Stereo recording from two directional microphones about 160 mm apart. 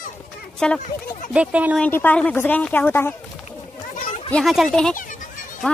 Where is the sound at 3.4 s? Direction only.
50° left (ahead or behind).